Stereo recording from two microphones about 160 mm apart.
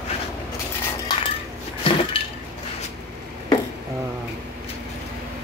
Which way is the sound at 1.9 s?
30° left (ahead or behind).